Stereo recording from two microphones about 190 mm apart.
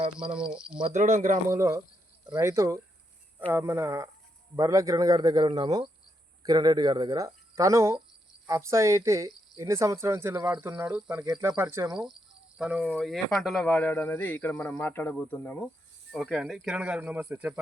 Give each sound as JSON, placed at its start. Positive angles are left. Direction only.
{"t": 0.2, "sound": "speech", "side_deg": -5}
{"t": 0.8, "sound": "speech", "side_deg": -40}
{"t": 1.5, "sound": "speech", "side_deg": -15}
{"t": 16.1, "sound": "speech", "side_deg": 0}